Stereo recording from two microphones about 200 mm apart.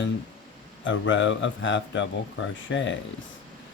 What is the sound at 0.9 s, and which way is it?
Speech, 70° left (ahead or behind).